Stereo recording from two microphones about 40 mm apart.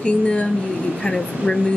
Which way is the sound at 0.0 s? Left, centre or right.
Left.